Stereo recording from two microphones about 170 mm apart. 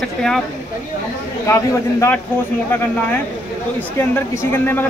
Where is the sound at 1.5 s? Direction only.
15° left (ahead or behind).